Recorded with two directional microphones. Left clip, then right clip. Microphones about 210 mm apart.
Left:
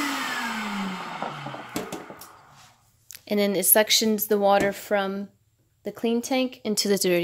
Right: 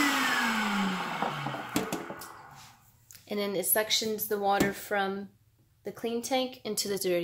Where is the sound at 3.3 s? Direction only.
40° left (ahead or behind).